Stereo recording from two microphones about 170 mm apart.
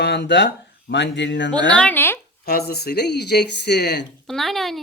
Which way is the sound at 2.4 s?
65° left (ahead or behind).